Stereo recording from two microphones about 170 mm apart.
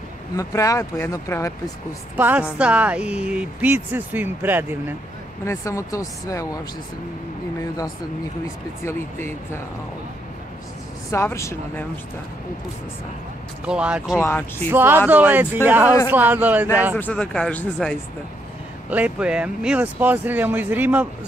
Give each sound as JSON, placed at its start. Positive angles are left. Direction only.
{"t": 0.4, "sound": "speech", "side_deg": 20}
{"t": 2.1, "sound": "speech", "side_deg": -10}
{"t": 5.4, "sound": "speech", "side_deg": 15}
{"t": 11.1, "sound": "speech", "side_deg": 15}
{"t": 13.7, "sound": "speech", "side_deg": -5}
{"t": 14.2, "sound": "speech", "side_deg": 10}
{"t": 14.7, "sound": "speech", "side_deg": -10}
{"t": 16.9, "sound": "speech", "side_deg": 5}
{"t": 18.9, "sound": "speech", "side_deg": -10}